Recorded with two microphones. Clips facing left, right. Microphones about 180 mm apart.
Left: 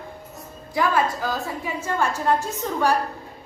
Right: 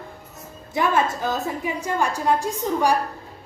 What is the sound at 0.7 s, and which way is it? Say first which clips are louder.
A woman's voice: even; 20° right (ahead or behind).